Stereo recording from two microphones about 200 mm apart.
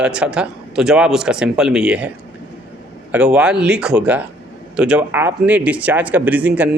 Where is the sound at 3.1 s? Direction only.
5° right (ahead or behind).